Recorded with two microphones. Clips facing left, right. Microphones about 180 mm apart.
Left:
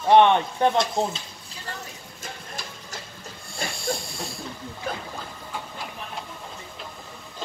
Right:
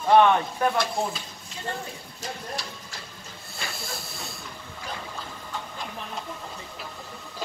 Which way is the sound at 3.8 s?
Centre (ahead or behind).